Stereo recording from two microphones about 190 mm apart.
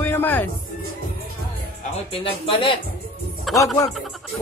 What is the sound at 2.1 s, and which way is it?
Speech, 30° left (ahead or behind).